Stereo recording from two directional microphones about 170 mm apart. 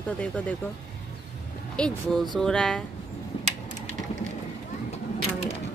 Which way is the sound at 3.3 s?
30° left (ahead or behind).